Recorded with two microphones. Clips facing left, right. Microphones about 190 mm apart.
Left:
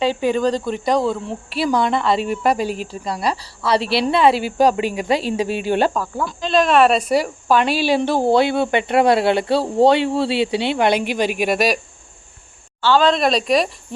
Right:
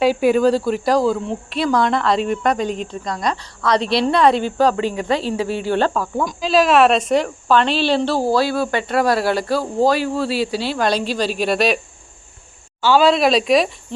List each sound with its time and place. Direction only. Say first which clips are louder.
0.0 s speech: right 3 dB; 10° right (ahead or behind); by 6.1 s 10° left (ahead or behind)
6.4 s speech: right 1 dB; 5° right (ahead or behind); by 11.8 s 15° left (ahead or behind)
12.8 s speech: right 2 dB; 10° right (ahead or behind)